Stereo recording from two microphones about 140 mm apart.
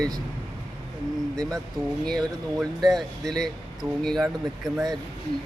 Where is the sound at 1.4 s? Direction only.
25° right (ahead or behind).